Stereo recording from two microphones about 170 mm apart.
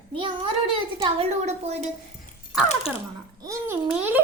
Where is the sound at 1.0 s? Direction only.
35° right (ahead or behind).